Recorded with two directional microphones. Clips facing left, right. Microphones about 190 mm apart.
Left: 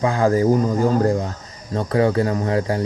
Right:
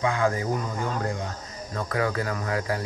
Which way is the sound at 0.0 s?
35° left (ahead or behind).